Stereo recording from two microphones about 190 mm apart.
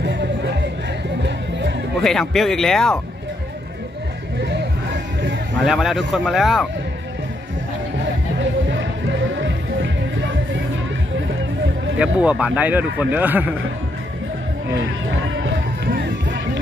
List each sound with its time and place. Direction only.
0.0 s music: 70° right (ahead or behind)
2.0 s speech: centre (ahead or behind)
4.4 s music: 65° right (ahead or behind)
5.6 s speech: centre (ahead or behind)
8.4 s music: 75° right (ahead or behind)
12.0 s a man's voice: 5° right (ahead or behind)
15.0 s run: 85° right
15.9 s run: 65° right (ahead or behind)